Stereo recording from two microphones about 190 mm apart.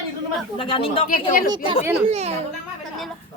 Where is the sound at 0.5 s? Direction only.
25° left (ahead or behind).